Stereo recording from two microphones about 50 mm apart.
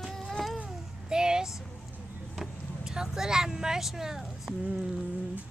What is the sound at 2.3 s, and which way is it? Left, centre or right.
Speech, centre.